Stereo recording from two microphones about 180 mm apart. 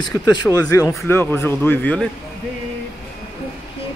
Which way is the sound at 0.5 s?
20° left (ahead or behind).